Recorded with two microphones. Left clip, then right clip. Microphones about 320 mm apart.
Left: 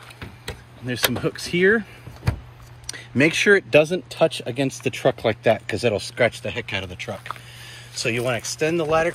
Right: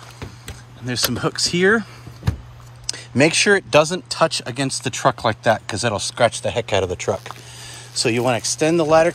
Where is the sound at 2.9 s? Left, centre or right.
Centre.